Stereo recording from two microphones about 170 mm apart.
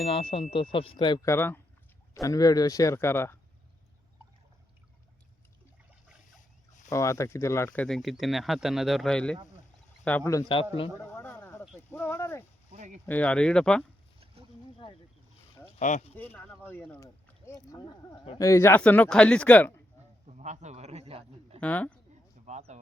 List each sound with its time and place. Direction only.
0.0 s speech: 35° left (ahead or behind)
1.3 s speech: 15° left (ahead or behind)
6.9 s speech: 20° left (ahead or behind)
11.0 s a sound: 10° left (ahead or behind)
11.9 s speech: 15° left (ahead or behind)
12.7 s speech: 45° right (ahead or behind)
13.1 s speech: 10° left (ahead or behind)
15.8 s speech: 45° left (ahead or behind)
16.1 s speech: 10° left (ahead or behind)
20.2 s a sound: 45° right (ahead or behind)
21.6 s speech: 10° left (ahead or behind)
22.4 s a sound: 45° right (ahead or behind)